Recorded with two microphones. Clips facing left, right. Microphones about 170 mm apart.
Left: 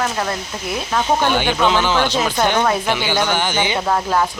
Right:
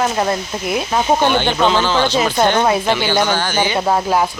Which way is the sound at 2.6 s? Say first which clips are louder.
Right 2 dB; 20° right (ahead or behind).